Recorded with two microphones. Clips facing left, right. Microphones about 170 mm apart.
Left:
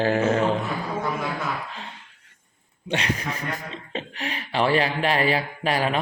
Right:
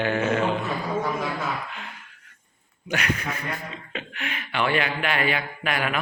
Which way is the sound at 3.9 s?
35° left (ahead or behind).